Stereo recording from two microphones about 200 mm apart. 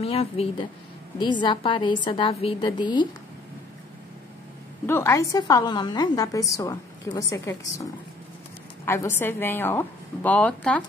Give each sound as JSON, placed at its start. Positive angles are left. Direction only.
{"t": 0.0, "sound": "a woman's voice", "side_deg": 30}
{"t": 4.8, "sound": "a woman's voice", "side_deg": 15}